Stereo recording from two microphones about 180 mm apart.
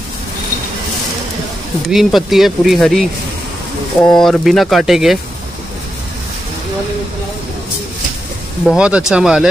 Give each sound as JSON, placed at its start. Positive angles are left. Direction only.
{"t": 1.9, "sound": "speech", "side_deg": 0}
{"t": 8.6, "sound": "speech", "side_deg": -5}